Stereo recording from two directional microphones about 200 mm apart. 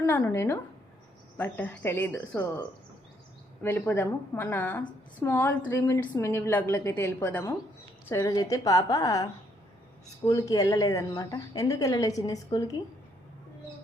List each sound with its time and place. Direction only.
0.0 s speech: 10° left (ahead or behind)
3.6 s speech: 10° left (ahead or behind)